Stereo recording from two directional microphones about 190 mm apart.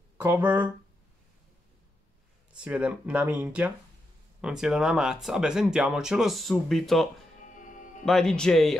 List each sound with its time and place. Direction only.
0.2 s speech: 10° right (ahead or behind)
2.6 s speech: 5° right (ahead or behind)
7.4 s music: 40° left (ahead or behind)
8.0 s speech: 5° left (ahead or behind)